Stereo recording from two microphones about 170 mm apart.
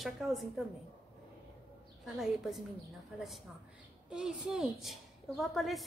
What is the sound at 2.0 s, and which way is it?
Speech, centre (ahead or behind).